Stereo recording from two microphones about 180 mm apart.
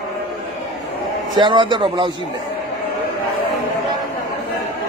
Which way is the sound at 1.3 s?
25° right (ahead or behind).